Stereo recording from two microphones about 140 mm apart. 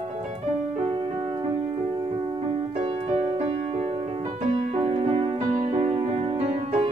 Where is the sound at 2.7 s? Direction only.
45° right (ahead or behind).